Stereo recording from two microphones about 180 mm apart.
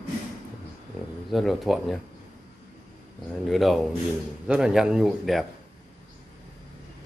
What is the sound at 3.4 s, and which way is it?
A man's voice, centre (ahead or behind).